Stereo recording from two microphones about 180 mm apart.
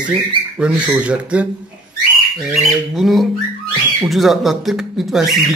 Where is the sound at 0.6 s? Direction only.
5° right (ahead or behind).